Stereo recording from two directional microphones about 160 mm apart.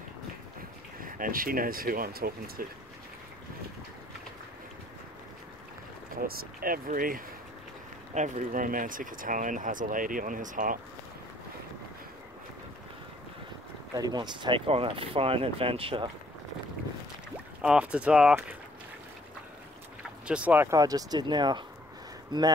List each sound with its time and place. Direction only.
1.0 s speech: 60° right (ahead or behind)
6.1 s speech: 65° right (ahead or behind)
8.1 s speech: 50° right (ahead or behind)
13.9 s speech: 25° right (ahead or behind)
17.6 s speech: 5° right (ahead or behind)
20.2 s speech: 10° right (ahead or behind); by 22.5 s 30° right (ahead or behind)